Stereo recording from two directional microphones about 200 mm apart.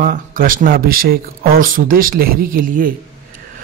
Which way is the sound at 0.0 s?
45° right (ahead or behind).